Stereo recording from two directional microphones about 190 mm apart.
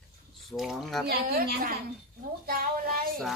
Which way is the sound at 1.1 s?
55° right (ahead or behind).